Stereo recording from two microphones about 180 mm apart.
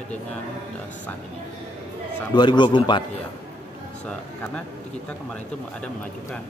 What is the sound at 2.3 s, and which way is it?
Speech, 25° left (ahead or behind).